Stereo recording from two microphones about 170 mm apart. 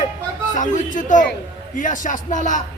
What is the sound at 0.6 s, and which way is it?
A man's voice, 50° left (ahead or behind).